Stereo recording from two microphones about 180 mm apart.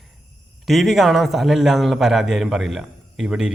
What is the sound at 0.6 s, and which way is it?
A man's voice, centre (ahead or behind).